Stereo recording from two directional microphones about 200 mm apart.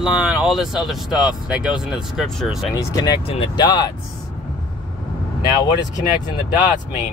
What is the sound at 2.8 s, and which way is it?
Speech, 20° left (ahead or behind).